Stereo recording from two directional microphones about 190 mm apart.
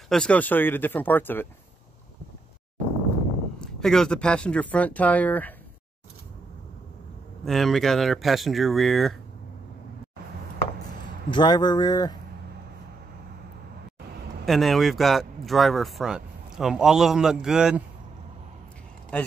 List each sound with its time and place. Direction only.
0.1 s speech: 5° left (ahead or behind)
3.6 s speech: 5° left (ahead or behind)
7.4 s speech: centre (ahead or behind)
11.2 s speech: 25° left (ahead or behind)
14.4 s speech: centre (ahead or behind)
19.1 s speech: 5° left (ahead or behind)